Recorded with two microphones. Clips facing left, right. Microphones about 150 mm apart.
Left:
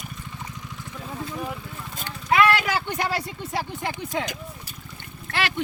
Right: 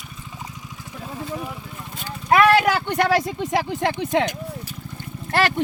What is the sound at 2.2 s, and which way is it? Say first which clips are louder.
Speech: right 4 dB; 55° right (ahead or behind).